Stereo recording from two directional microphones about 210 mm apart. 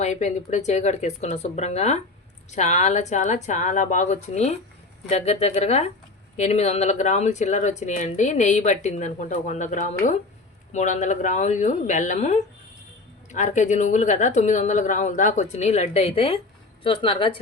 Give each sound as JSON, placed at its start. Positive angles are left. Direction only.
{"t": 0.0, "sound": "a woman's voice", "side_deg": 35}